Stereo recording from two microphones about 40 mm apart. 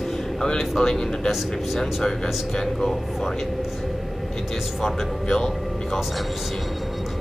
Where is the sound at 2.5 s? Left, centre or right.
Centre.